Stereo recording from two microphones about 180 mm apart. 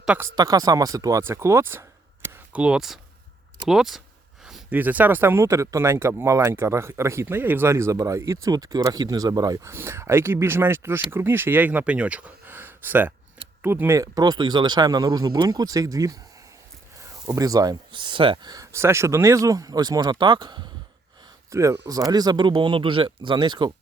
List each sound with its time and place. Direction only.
0.0 s speech: 5° right (ahead or behind)
0.3 s speech: 20° right (ahead or behind)
17.2 s speech: 20° right (ahead or behind)